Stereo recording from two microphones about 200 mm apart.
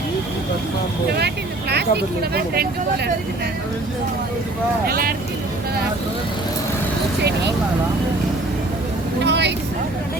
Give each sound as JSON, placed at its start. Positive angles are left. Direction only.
{"t": 1.7, "sound": "speech", "side_deg": -55}
{"t": 4.9, "sound": "speech", "side_deg": -50}
{"t": 7.2, "sound": "speech", "side_deg": -55}
{"t": 9.2, "sound": "speech", "side_deg": -60}